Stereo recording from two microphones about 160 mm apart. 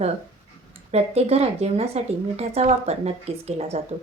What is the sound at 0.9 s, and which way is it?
Speech, 40° right (ahead or behind).